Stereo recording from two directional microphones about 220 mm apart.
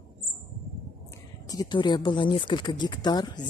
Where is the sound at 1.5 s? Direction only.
20° left (ahead or behind).